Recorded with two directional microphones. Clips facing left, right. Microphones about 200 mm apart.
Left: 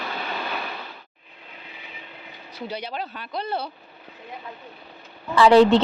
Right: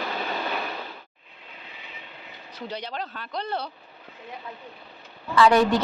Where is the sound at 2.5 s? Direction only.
10° left (ahead or behind).